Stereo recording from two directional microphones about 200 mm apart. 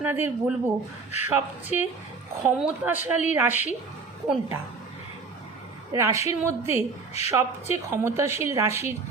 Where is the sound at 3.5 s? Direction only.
35° left (ahead or behind).